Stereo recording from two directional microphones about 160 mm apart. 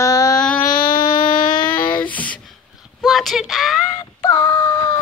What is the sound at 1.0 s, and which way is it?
Child singing, 30° left (ahead or behind).